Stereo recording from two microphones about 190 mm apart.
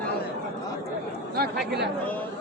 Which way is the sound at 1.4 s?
60° right (ahead or behind).